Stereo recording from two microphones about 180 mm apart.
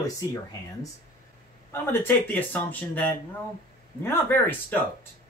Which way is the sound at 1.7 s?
10° left (ahead or behind).